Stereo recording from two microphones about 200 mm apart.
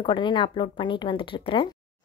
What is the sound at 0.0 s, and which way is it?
A woman's voice, 25° left (ahead or behind).